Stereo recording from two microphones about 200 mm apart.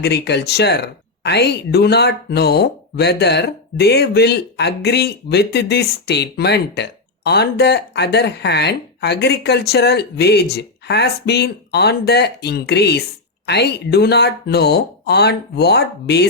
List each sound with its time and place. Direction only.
0.0 s speech: 55° left (ahead or behind)